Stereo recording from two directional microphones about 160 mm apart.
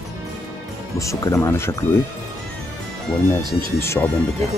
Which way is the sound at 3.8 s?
10° left (ahead or behind).